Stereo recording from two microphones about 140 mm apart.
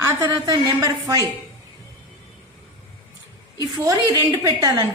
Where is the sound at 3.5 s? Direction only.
25° right (ahead or behind).